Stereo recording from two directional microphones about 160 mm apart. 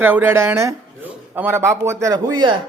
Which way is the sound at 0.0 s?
15° right (ahead or behind).